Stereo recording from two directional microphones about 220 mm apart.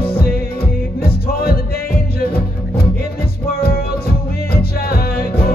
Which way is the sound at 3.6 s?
45° left (ahead or behind).